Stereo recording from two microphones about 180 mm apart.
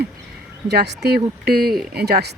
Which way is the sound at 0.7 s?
65° right (ahead or behind).